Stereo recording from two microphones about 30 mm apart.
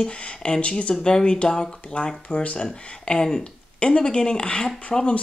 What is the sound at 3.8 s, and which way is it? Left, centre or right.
Speech, left.